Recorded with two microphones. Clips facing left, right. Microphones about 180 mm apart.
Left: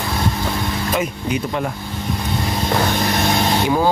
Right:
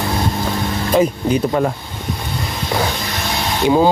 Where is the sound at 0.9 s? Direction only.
35° right (ahead or behind).